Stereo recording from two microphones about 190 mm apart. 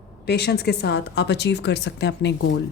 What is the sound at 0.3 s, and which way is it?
Speech, 60° left (ahead or behind).